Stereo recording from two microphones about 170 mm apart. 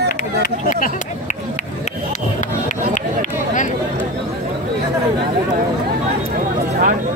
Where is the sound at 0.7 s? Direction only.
50° left (ahead or behind).